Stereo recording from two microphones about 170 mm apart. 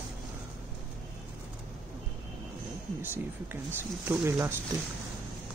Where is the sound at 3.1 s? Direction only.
15° right (ahead or behind).